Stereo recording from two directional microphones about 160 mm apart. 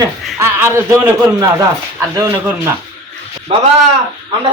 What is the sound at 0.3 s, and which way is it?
A man's voice, 15° right (ahead or behind).